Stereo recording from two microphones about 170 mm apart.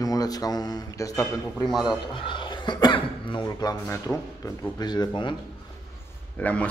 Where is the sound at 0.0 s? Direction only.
20° left (ahead or behind).